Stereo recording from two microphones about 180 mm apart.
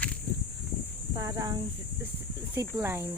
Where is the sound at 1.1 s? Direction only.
20° right (ahead or behind).